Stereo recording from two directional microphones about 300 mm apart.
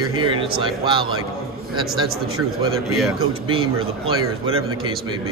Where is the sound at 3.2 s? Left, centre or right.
Centre.